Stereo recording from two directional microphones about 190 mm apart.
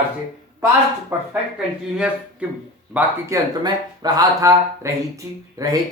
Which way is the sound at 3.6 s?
20° right (ahead or behind).